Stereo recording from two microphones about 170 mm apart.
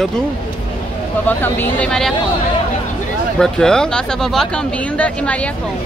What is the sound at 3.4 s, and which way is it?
Speech, 5° left (ahead or behind).